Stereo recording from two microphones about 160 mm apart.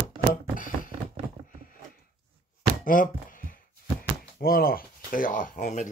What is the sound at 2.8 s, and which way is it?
Chopping, 60° left (ahead or behind).